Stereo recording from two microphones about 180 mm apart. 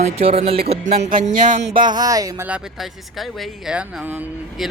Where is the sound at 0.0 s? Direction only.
35° right (ahead or behind).